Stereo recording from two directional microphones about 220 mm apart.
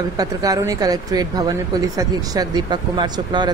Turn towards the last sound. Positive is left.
turn(degrees=-20)  # may be behind; listen again after turning